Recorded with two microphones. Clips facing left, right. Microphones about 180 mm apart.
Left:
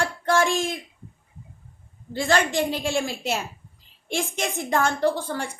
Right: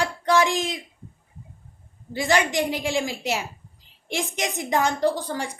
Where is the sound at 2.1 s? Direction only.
15° right (ahead or behind).